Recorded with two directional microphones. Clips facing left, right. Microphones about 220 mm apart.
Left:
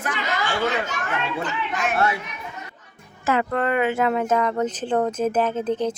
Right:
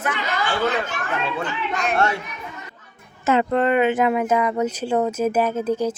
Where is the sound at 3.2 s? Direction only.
25° right (ahead or behind).